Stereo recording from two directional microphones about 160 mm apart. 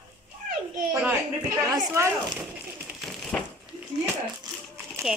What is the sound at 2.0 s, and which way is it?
Speech, 15° right (ahead or behind).